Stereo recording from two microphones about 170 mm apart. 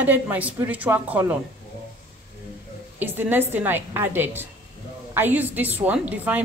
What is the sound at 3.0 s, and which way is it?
Speech, 10° right (ahead or behind).